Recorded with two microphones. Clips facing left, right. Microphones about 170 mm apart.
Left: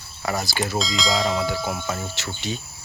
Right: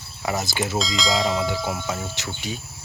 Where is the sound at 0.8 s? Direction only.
Centre (ahead or behind).